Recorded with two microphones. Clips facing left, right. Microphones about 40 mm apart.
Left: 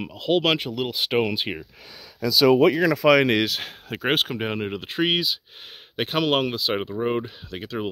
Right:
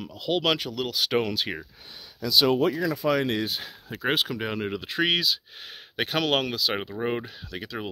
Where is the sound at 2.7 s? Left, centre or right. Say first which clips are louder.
Left 6 dB; left.